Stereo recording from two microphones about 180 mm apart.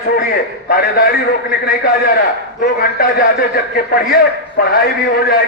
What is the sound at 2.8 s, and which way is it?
A man's voice, 55° left (ahead or behind).